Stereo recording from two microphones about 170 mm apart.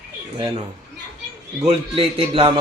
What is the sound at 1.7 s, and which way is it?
Speech, 35° right (ahead or behind).